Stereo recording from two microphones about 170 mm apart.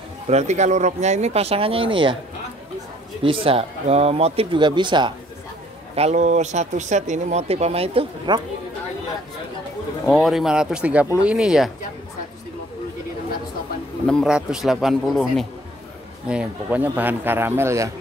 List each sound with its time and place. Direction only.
0.3 s speech: 40° right (ahead or behind)
3.3 s speech: 35° right (ahead or behind)
5.9 s speech: 40° right (ahead or behind)
10.0 s speech: centre (ahead or behind)
14.0 s a man's voice: centre (ahead or behind); by 17.9 s 15° right (ahead or behind)